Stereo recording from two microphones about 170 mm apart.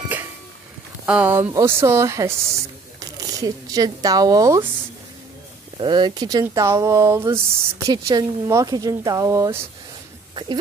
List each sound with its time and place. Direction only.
1.0 s speech: 10° right (ahead or behind)
5.8 s speech: 25° right (ahead or behind)